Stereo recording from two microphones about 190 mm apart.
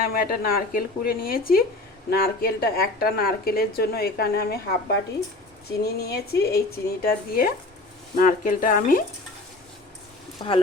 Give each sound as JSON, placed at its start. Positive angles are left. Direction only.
{"t": 0.0, "sound": "speech", "side_deg": 50}
{"t": 5.8, "sound": "speech", "side_deg": 55}
{"t": 10.4, "sound": "speech", "side_deg": 25}